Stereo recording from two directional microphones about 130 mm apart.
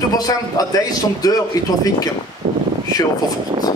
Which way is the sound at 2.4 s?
75° right (ahead or behind).